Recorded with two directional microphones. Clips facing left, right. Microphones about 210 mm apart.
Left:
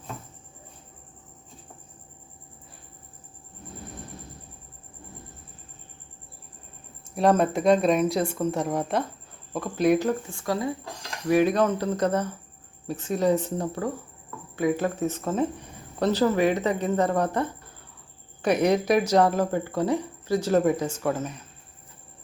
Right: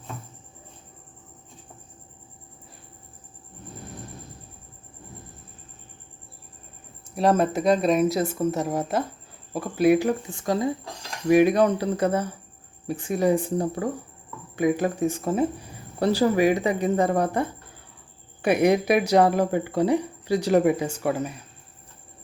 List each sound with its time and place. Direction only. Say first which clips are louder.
7.2 s speech: even; centre (ahead or behind)